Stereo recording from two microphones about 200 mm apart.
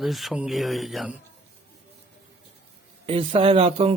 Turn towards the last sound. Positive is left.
turn(degrees=-30)  # may be behind; listen again after turning